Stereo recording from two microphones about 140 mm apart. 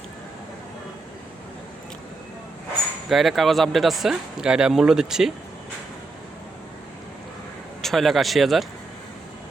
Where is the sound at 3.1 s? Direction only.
Centre (ahead or behind).